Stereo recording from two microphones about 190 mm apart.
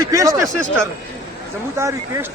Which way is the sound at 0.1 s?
15° right (ahead or behind).